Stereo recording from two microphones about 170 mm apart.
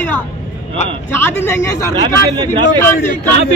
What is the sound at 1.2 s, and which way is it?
Speech, 15° left (ahead or behind).